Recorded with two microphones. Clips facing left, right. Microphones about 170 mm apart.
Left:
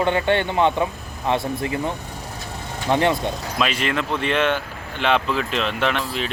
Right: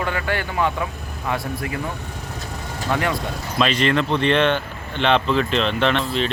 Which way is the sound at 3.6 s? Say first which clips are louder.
Right 5 dB; 5° left (ahead or behind).